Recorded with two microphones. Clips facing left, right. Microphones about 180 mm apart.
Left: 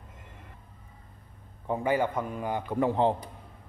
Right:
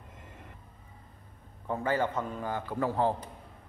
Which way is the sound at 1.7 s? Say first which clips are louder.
Left 3 dB; 15° left (ahead or behind).